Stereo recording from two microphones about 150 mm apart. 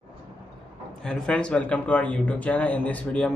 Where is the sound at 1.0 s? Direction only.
5° left (ahead or behind).